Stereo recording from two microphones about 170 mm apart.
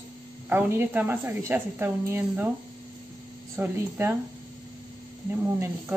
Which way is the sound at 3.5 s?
15° right (ahead or behind).